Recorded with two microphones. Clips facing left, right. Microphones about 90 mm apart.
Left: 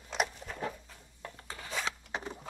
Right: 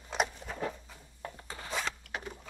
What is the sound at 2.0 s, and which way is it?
Zipper, 25° left (ahead or behind).